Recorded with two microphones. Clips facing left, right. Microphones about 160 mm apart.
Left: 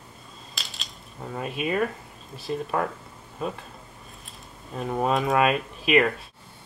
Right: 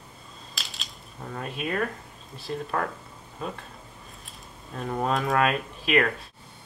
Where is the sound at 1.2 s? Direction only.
5° left (ahead or behind).